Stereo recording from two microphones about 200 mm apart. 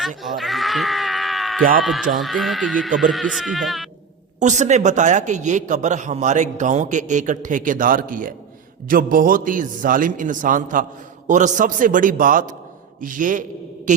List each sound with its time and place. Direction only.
0.2 s a sound: centre (ahead or behind)
1.8 s speech: centre (ahead or behind)
4.4 s a man's voice: 35° right (ahead or behind)